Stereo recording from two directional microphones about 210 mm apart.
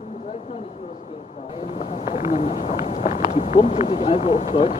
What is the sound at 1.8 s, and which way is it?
Speech, 30° left (ahead or behind).